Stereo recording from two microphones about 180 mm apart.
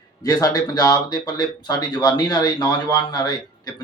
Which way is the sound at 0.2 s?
20° left (ahead or behind).